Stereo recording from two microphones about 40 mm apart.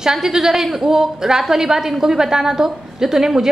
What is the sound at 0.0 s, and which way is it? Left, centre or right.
A woman's voice, centre.